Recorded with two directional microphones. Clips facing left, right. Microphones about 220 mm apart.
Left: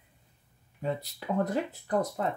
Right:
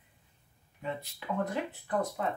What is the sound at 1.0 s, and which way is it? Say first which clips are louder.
Speech: left 2 dB; 40° left (ahead or behind).